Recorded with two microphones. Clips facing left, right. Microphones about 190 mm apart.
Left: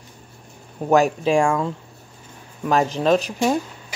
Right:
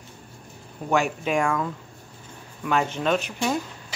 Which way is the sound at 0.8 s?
35° left (ahead or behind).